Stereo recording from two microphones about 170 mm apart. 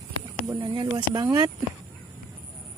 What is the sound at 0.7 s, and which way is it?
Speech, 25° right (ahead or behind).